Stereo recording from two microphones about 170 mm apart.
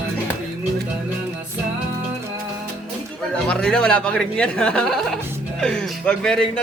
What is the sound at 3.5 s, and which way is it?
Speech, 5° left (ahead or behind).